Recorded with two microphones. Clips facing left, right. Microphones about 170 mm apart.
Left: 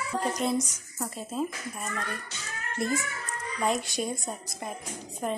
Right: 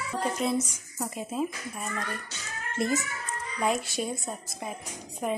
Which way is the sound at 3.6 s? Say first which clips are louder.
Even; centre (ahead or behind).